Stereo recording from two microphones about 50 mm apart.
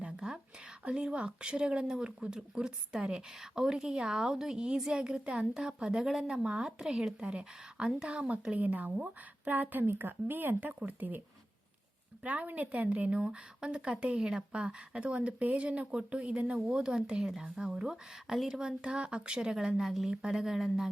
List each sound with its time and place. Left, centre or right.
0.2 s whispering: centre
0.9 s speech: right
6.2 s a woman's voice: right
12.2 s a woman's voice: right; by 18.6 s centre
18.6 s speech: centre